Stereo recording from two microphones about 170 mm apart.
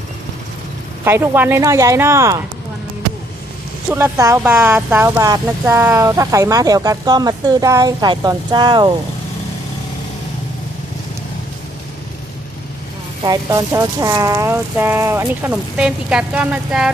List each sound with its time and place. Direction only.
1.0 s speech: 15° right (ahead or behind)
3.8 s speech: 15° right (ahead or behind)
13.2 s speech: 20° right (ahead or behind)